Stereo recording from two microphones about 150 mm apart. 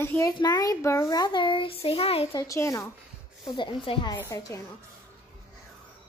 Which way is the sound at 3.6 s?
35° left (ahead or behind).